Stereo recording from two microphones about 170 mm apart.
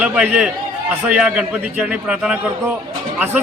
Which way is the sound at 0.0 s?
5° right (ahead or behind).